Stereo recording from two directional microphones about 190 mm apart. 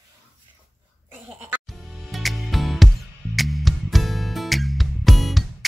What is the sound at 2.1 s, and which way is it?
Music, centre (ahead or behind).